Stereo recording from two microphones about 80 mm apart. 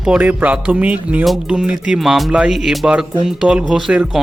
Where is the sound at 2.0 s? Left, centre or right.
Centre.